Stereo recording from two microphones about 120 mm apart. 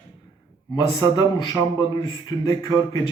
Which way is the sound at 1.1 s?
30° left (ahead or behind).